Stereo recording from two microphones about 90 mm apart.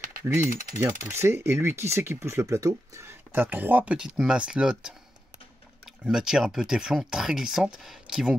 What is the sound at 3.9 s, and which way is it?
Speech, 10° right (ahead or behind).